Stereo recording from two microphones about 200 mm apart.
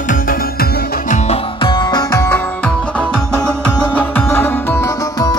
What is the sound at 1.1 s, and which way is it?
Music, 30° left (ahead or behind).